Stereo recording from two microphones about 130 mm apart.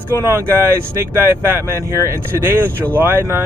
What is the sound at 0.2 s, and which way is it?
Speech, 20° right (ahead or behind).